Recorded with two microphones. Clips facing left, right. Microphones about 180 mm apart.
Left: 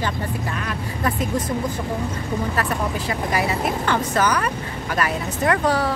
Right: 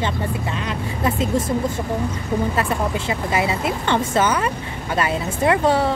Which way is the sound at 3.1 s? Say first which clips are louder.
Even; 25° right (ahead or behind).